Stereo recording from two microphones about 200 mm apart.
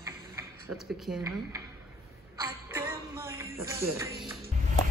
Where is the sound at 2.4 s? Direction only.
15° right (ahead or behind).